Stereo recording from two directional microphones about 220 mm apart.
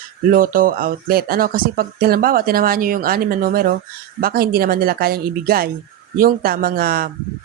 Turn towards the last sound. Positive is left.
turn(degrees=-40)  # may be behind; listen again after turning